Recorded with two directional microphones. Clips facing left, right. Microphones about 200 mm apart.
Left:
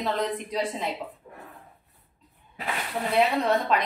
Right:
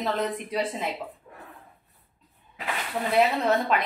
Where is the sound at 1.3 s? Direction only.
20° left (ahead or behind).